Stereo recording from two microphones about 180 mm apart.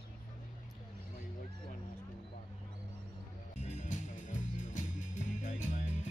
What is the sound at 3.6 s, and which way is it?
Music, 40° left (ahead or behind).